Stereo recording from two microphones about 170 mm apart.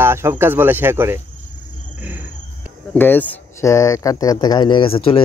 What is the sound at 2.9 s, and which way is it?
Speech, 10° left (ahead or behind).